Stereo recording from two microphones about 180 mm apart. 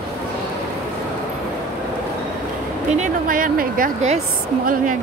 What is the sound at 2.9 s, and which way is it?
A woman's voice, 45° right (ahead or behind).